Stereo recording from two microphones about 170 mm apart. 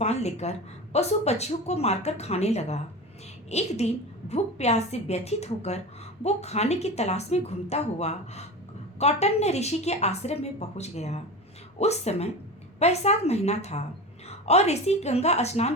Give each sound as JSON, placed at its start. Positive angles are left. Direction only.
{"t": 0.0, "sound": "a woman's voice", "side_deg": 40}